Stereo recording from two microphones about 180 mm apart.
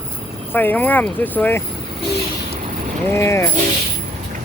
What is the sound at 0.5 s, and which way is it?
Speech, 10° left (ahead or behind).